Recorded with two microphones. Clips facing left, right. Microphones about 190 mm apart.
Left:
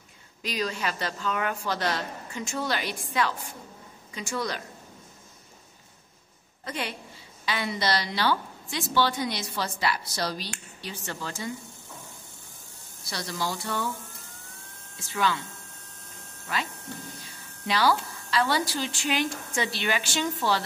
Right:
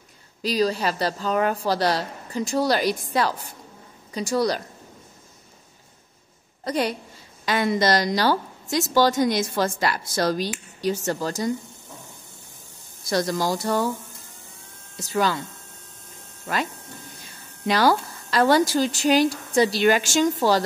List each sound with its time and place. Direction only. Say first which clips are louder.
0.4 s a woman's voice: right 8 dB; 35° right (ahead or behind)
6.6 s a woman's voice: right 9 dB; 40° right (ahead or behind)
13.0 s a woman's voice: right 9 dB; 45° right (ahead or behind)
15.0 s a woman's voice: right 5 dB; 40° right (ahead or behind)
17.6 s a woman's voice: right 5 dB; 45° right (ahead or behind)